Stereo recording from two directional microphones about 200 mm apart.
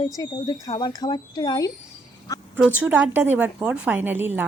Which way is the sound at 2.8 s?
5° right (ahead or behind).